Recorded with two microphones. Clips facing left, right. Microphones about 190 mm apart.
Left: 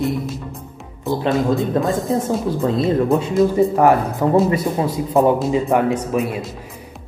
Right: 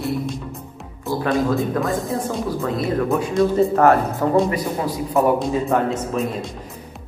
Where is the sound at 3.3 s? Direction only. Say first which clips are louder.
Left 1 dB; 10° left (ahead or behind).